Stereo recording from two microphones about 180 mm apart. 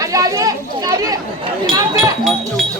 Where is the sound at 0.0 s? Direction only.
20° right (ahead or behind).